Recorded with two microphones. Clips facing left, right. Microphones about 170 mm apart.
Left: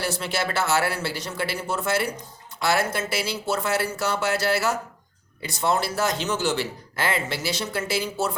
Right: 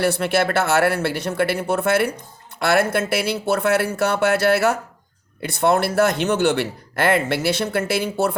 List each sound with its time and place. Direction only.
0.0 s speech: 60° right (ahead or behind)